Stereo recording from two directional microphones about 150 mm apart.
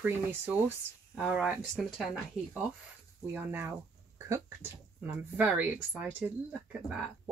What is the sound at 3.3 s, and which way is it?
Speech, 15° right (ahead or behind).